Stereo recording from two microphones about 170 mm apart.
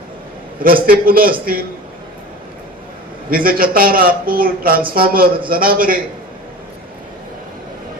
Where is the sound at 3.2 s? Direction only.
60° right (ahead or behind).